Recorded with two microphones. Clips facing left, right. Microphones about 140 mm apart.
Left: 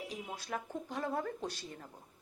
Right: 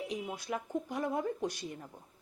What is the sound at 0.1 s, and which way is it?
Speech, 15° right (ahead or behind).